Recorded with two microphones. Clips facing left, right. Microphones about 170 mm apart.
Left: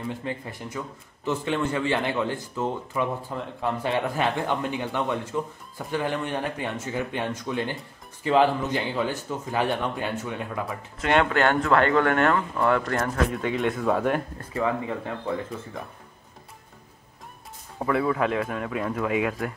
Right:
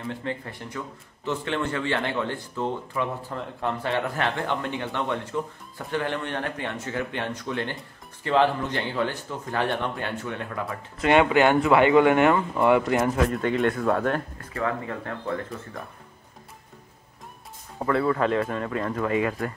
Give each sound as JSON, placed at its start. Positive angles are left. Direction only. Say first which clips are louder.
{"t": 0.2, "sound": "speech", "louder": "even", "side_deg": 10}
{"t": 11.0, "sound": "speech", "louder": "right 3 dB", "side_deg": -5}
{"t": 13.3, "sound": "speech", "louder": "right 2 dB", "side_deg": 0}
{"t": 17.7, "sound": "speech", "louder": "right 1 dB", "side_deg": 5}